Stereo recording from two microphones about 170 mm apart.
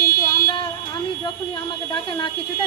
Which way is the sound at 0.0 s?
60° left (ahead or behind).